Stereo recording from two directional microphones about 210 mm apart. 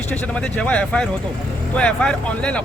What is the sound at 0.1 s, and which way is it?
Speech, 5° left (ahead or behind).